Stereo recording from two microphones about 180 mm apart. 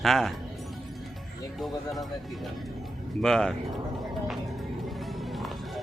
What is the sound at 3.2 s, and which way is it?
Speech, 5° left (ahead or behind).